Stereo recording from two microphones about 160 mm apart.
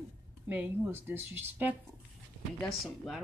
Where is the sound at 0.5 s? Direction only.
10° right (ahead or behind).